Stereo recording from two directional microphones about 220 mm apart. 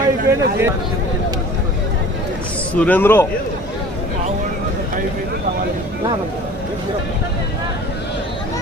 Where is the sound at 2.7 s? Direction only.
5° left (ahead or behind).